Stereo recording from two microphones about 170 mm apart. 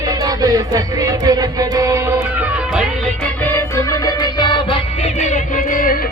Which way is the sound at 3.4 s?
15° left (ahead or behind).